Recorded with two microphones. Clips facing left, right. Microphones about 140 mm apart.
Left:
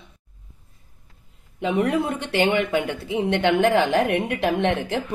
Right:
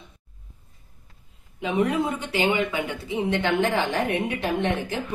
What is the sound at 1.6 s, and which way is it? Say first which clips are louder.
Speech: left 2 dB; 65° left (ahead or behind).